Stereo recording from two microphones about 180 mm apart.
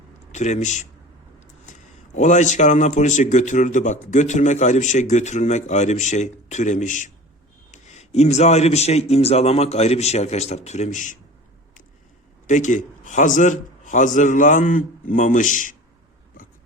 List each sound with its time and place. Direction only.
0.3 s speech: 40° left (ahead or behind)
1.7 s a sound: 45° left (ahead or behind)
2.1 s speech: 40° left (ahead or behind)
12.5 s a man's voice: 45° left (ahead or behind)